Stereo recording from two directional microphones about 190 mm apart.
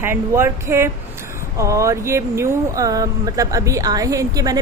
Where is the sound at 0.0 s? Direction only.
15° right (ahead or behind).